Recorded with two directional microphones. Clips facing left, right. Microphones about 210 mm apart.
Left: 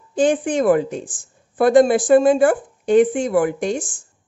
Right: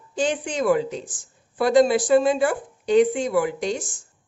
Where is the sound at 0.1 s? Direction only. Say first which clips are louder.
Left 7 dB; 50° left (ahead or behind).